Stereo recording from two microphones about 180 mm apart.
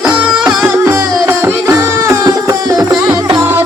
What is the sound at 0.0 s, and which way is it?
Music, 5° right (ahead or behind).